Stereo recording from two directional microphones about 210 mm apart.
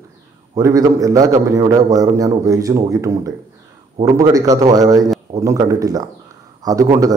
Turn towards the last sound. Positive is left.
turn(degrees=-15)  # may be behind; listen again after turning